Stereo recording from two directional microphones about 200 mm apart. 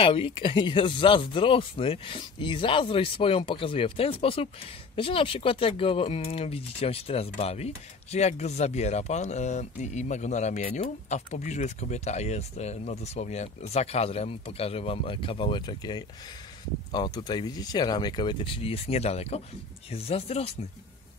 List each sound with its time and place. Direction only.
0.0 s speech: 25° left (ahead or behind)